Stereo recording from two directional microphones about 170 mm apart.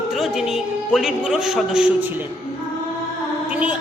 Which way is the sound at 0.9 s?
5° right (ahead or behind).